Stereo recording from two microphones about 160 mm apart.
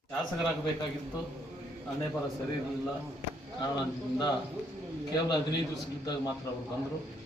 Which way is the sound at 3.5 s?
30° left (ahead or behind).